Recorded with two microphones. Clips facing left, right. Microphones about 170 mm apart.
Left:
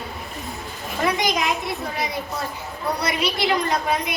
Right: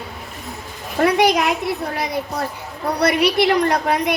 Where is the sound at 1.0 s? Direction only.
65° right (ahead or behind).